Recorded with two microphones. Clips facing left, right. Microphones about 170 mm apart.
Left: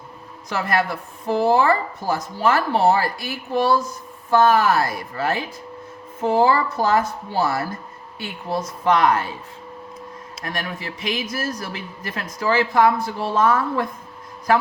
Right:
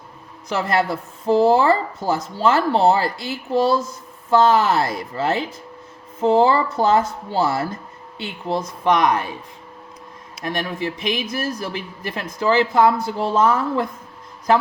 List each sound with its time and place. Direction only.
0.5 s speech: 25° right (ahead or behind)
10.4 s speech: 20° right (ahead or behind)